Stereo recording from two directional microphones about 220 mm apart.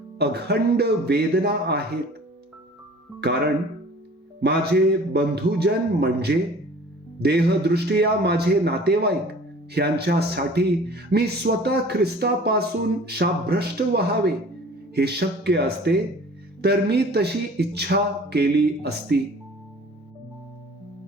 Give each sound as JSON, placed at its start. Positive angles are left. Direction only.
{"t": 0.2, "sound": "a man's voice", "side_deg": -50}
{"t": 3.2, "sound": "speech", "side_deg": -50}
{"t": 5.1, "sound": "a man's voice", "side_deg": -45}